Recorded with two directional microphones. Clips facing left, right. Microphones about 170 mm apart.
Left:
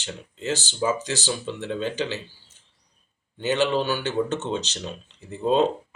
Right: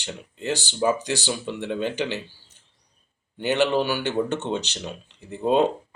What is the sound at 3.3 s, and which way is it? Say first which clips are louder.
Speech: right 1 dB; 15° right (ahead or behind).